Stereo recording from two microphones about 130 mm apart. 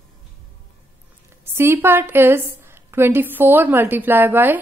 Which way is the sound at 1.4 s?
20° right (ahead or behind).